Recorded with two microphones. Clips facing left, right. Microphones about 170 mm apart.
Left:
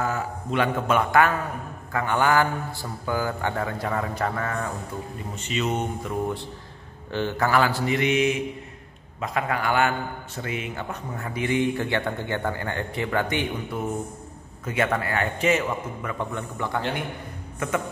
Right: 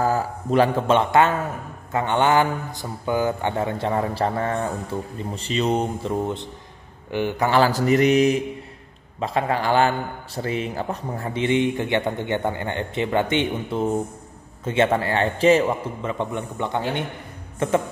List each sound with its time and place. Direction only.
0.0 s a man's voice: 35° right (ahead or behind); by 7.5 s 15° right (ahead or behind)
7.5 s a man's voice: 35° right (ahead or behind)